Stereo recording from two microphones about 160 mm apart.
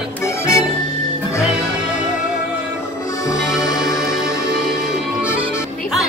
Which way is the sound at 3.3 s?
20° left (ahead or behind).